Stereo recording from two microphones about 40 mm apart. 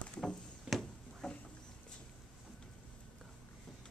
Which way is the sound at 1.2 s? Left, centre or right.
Centre.